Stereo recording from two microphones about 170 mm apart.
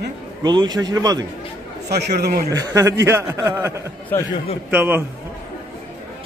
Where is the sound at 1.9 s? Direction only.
75° right (ahead or behind).